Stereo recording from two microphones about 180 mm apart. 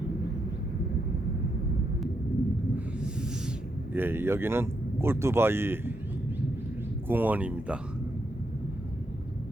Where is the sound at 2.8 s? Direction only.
5° right (ahead or behind).